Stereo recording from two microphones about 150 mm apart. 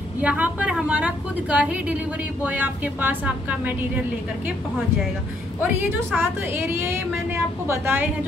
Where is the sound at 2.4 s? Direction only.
10° right (ahead or behind).